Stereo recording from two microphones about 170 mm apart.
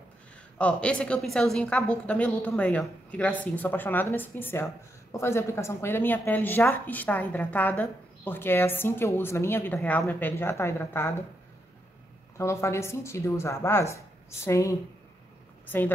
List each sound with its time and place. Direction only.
0.6 s a woman's voice: 5° left (ahead or behind)
12.4 s a woman's voice: 15° left (ahead or behind)